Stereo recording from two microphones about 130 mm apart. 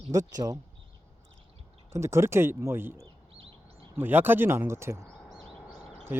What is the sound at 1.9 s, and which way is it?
Speech, 20° right (ahead or behind).